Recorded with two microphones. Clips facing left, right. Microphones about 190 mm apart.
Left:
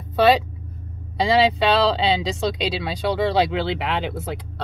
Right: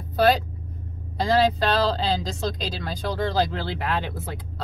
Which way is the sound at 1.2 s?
70° left (ahead or behind).